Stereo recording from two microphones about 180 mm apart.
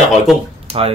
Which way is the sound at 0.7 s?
35° right (ahead or behind).